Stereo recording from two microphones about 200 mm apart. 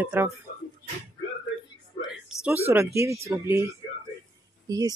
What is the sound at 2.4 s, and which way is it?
Speech, 10° right (ahead or behind).